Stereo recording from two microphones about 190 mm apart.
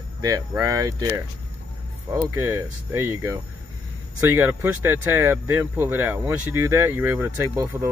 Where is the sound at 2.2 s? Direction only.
15° right (ahead or behind).